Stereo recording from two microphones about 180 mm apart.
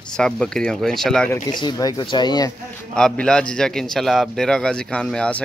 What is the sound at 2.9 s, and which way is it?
A man's voice, 5° left (ahead or behind).